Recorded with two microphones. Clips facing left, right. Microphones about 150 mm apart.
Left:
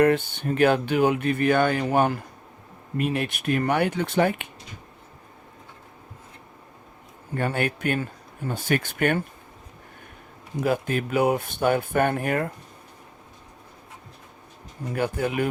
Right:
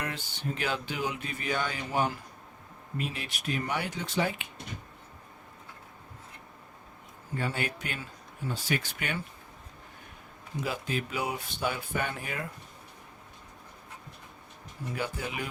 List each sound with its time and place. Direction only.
0.0 s speech: 55° left (ahead or behind)
7.3 s speech: 55° left (ahead or behind)
10.6 s speech: 55° left (ahead or behind)
14.9 s speech: 55° left (ahead or behind)